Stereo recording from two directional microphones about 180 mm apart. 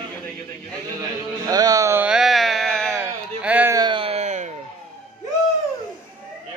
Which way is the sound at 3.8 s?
25° right (ahead or behind).